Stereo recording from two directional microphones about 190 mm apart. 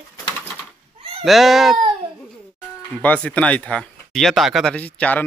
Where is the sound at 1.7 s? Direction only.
25° right (ahead or behind).